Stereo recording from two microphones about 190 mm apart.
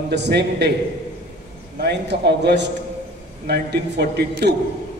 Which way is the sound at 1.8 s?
60° right (ahead or behind).